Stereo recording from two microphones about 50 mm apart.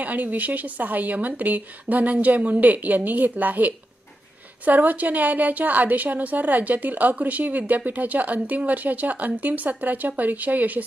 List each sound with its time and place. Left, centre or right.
0.0 s a woman's voice: right